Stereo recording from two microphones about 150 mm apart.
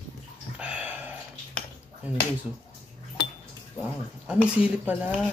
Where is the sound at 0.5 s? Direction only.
10° right (ahead or behind).